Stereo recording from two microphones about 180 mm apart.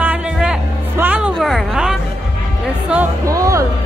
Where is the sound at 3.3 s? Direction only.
20° right (ahead or behind).